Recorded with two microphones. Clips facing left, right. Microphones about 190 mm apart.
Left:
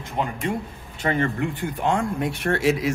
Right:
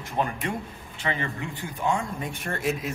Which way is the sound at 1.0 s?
50° left (ahead or behind).